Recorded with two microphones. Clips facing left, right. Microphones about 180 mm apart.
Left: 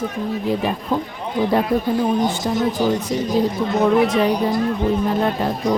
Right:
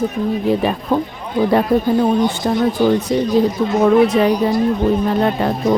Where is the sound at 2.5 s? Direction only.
70° right (ahead or behind).